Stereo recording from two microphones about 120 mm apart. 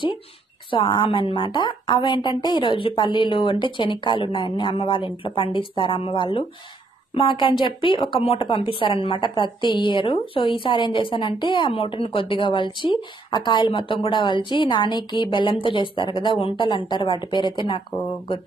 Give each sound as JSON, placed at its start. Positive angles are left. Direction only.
{"t": 0.7, "sound": "a woman's voice", "side_deg": 45}